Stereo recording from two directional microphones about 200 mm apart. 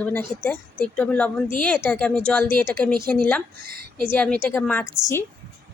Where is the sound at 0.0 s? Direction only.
10° left (ahead or behind).